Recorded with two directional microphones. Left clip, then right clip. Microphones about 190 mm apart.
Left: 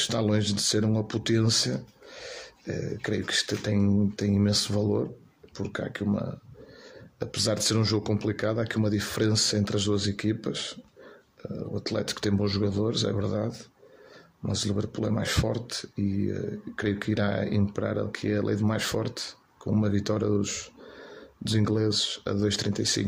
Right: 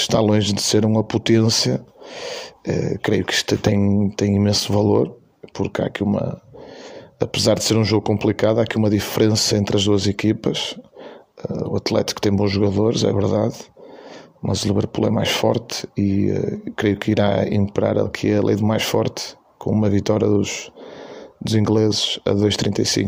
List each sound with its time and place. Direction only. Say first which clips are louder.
0.0 s speech: right 9 dB; 30° right (ahead or behind)